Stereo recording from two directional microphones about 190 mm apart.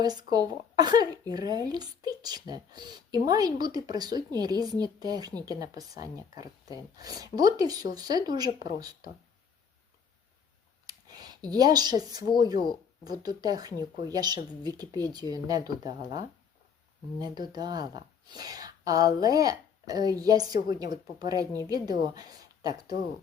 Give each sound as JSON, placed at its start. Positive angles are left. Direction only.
{"t": 0.0, "sound": "speech", "side_deg": -20}
{"t": 10.8, "sound": "a sound", "side_deg": -20}
{"t": 13.1, "sound": "speech", "side_deg": -20}